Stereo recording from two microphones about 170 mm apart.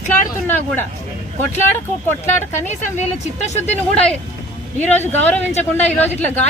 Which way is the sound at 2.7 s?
40° left (ahead or behind).